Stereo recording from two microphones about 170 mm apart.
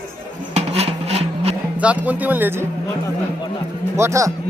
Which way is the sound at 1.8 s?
10° right (ahead or behind).